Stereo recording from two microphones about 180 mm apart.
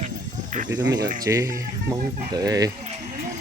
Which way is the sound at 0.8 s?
20° right (ahead or behind).